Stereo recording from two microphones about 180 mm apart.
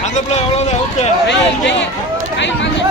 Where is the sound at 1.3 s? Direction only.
80° left.